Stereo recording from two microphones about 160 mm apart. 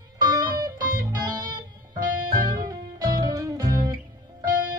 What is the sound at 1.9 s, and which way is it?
Music, 60° right (ahead or behind).